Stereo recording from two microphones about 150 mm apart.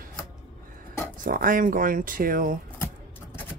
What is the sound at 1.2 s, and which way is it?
Speech, 65° right (ahead or behind).